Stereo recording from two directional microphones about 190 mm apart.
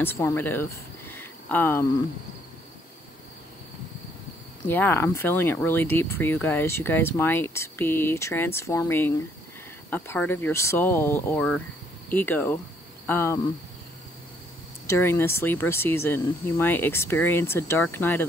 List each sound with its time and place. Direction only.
0.0 s speech: 10° left (ahead or behind)
4.6 s speech: 10° left (ahead or behind)
14.9 s speech: 10° left (ahead or behind)